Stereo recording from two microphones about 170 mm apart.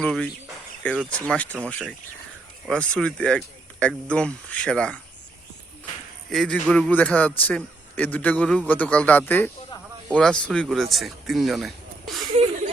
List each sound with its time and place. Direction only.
0.0 s a man's voice: 5° left (ahead or behind)
6.3 s a man's voice: 5° left (ahead or behind)
12.2 s a sound: 35° right (ahead or behind)